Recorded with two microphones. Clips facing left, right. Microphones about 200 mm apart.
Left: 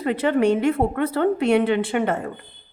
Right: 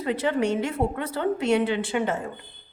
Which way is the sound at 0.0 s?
60° left (ahead or behind).